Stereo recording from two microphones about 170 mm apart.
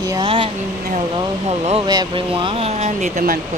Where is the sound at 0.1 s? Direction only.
30° right (ahead or behind).